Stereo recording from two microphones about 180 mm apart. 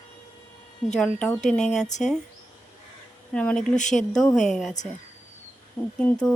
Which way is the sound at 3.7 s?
45° left (ahead or behind).